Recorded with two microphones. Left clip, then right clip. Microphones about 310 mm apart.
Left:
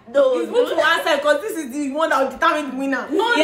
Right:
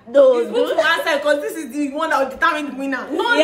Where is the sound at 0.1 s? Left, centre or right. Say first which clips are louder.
Right 3 dB; right.